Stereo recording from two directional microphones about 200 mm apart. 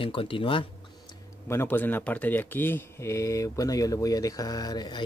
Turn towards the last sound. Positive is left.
turn(degrees=20)  # may be behind; listen again after turning